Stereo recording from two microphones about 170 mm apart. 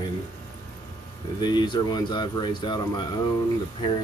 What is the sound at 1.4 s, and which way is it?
Speech, 25° left (ahead or behind).